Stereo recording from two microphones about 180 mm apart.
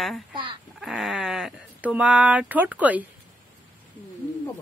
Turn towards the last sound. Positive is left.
turn(degrees=-10)  # may be behind; listen again after turning